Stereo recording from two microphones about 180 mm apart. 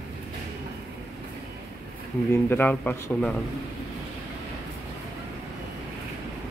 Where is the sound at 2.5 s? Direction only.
10° left (ahead or behind).